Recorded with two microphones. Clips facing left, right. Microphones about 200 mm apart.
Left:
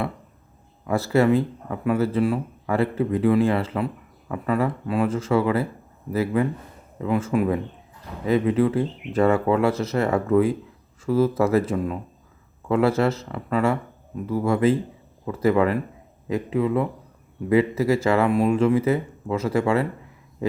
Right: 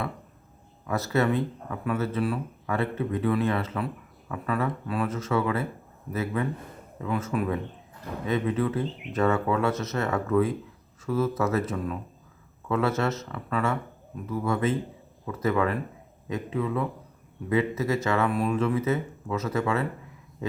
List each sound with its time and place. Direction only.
0.9 s speech: 30° left (ahead or behind)